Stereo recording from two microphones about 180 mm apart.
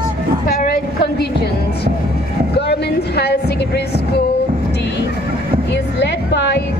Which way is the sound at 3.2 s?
65° left (ahead or behind).